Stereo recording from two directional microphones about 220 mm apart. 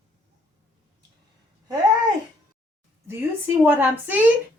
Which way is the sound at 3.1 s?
10° right (ahead or behind).